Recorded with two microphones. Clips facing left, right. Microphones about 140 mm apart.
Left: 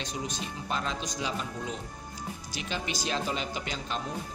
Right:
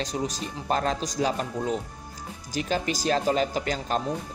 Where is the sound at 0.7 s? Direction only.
40° right (ahead or behind).